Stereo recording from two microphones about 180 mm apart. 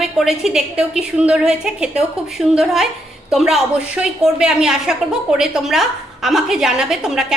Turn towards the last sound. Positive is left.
turn(degrees=-5)  # may be behind; listen again after turning